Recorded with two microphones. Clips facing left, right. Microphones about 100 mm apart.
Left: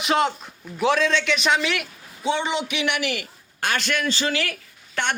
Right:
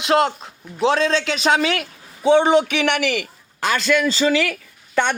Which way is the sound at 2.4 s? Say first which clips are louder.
Right 9 dB; 55° right (ahead or behind).